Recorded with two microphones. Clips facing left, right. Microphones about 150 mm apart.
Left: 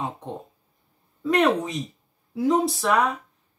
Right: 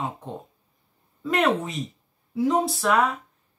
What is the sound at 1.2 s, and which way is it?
Speech, centre (ahead or behind).